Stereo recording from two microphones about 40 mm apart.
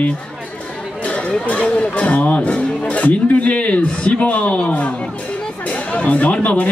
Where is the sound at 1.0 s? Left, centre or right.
Left.